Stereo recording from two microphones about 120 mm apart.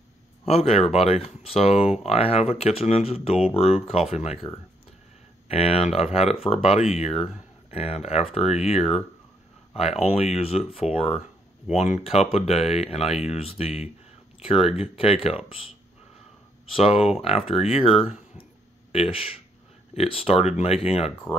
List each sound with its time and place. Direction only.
0.5 s speech: 60° left (ahead or behind)
5.5 s speech: 55° left (ahead or behind)
11.7 s speech: 70° left (ahead or behind); by 15.6 s 50° left (ahead or behind)
16.7 s speech: 55° left (ahead or behind)
17.9 s speech: 5° right (ahead or behind)
18.9 s speech: 55° left (ahead or behind)